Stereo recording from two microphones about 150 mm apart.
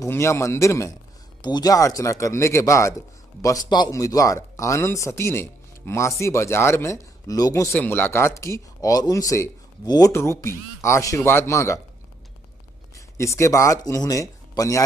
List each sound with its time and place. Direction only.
0.0 s speech: 20° left (ahead or behind)
12.9 s speech: 20° left (ahead or behind)